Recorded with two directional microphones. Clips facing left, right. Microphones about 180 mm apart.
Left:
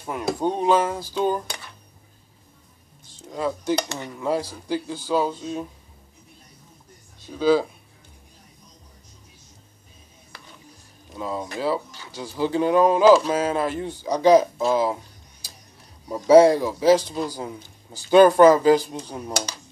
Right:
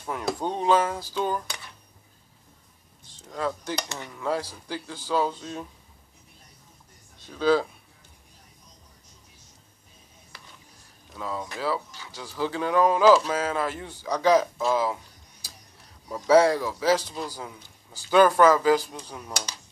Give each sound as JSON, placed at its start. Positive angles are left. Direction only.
{"t": 0.0, "sound": "speech", "side_deg": 15}
{"t": 3.3, "sound": "speech", "side_deg": 15}
{"t": 7.2, "sound": "speech", "side_deg": 10}
{"t": 11.1, "sound": "speech", "side_deg": 20}
{"t": 16.1, "sound": "speech", "side_deg": 15}